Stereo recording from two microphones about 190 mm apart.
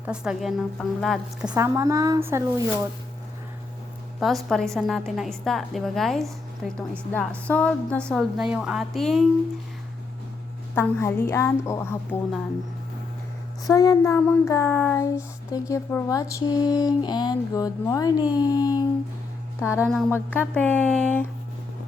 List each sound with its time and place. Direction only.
0.0 s a woman's voice: 5° right (ahead or behind)
1.5 s speech: 15° right (ahead or behind)
4.4 s a woman's voice: centre (ahead or behind)
7.1 s a woman's voice: 10° left (ahead or behind)
10.8 s child singing: 15° left (ahead or behind)
13.7 s child singing: 20° left (ahead or behind)
19.5 s speech: 15° left (ahead or behind)
19.9 s a woman's voice: centre (ahead or behind)
20.1 s child singing: 10° left (ahead or behind)